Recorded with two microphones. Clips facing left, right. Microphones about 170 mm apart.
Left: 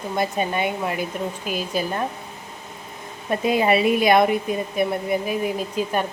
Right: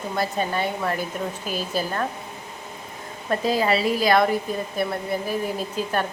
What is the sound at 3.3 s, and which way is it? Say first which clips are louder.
A woman's voice: left 2 dB; 20° left (ahead or behind).